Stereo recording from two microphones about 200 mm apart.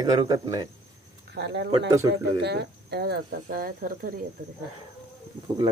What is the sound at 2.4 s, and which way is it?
Speech, 55° right (ahead or behind).